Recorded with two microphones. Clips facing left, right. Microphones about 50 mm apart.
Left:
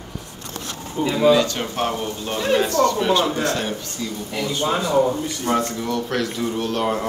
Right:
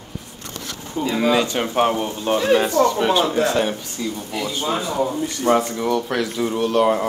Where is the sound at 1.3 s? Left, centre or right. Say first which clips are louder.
Even; right.